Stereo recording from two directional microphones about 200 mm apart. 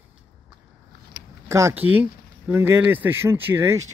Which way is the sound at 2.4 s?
10° right (ahead or behind).